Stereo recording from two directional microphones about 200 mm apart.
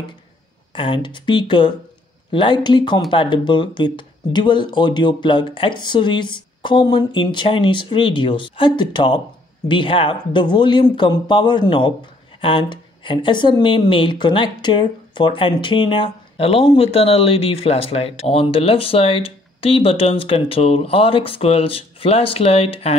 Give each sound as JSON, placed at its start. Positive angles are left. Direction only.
{"t": 0.7, "sound": "speech", "side_deg": 25}